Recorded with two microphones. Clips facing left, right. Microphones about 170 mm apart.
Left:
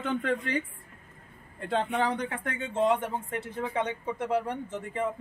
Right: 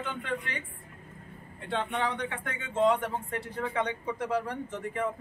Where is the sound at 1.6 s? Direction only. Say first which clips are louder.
Left 3 dB; 40° left (ahead or behind).